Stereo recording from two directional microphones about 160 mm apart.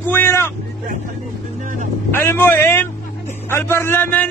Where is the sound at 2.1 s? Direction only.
15° left (ahead or behind).